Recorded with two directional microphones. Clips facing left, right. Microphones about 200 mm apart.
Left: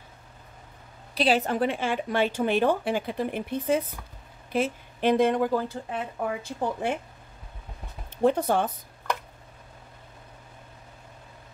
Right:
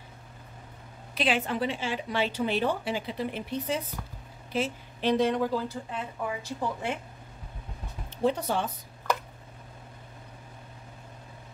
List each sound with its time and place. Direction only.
1.1 s a woman's voice: 35° left (ahead or behind); by 7.0 s 55° left (ahead or behind)
8.1 s speech: 55° left (ahead or behind)